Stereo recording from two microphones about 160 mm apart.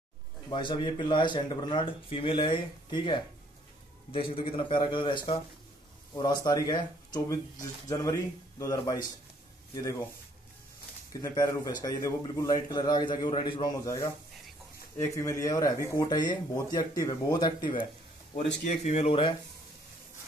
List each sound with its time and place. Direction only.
0.5 s a man's voice: 30° left (ahead or behind)
11.2 s a man's voice: 20° left (ahead or behind)
18.9 s speech: 40° left (ahead or behind)